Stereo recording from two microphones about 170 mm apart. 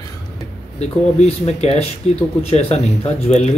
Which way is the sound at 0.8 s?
40° left (ahead or behind).